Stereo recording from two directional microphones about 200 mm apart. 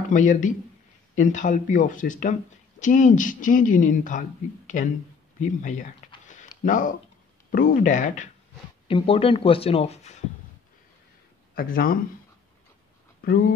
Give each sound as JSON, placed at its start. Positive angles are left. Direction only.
{"t": 0.1, "sound": "speech", "side_deg": 40}
{"t": 5.4, "sound": "a sound", "side_deg": 40}
{"t": 7.5, "sound": "speech", "side_deg": 40}
{"t": 8.8, "sound": "speech", "side_deg": 25}
{"t": 11.5, "sound": "speech", "side_deg": 45}
{"t": 13.2, "sound": "speech", "side_deg": 45}